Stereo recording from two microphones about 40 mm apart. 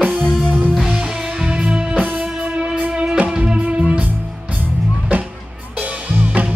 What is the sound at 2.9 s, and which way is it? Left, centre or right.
Music, right.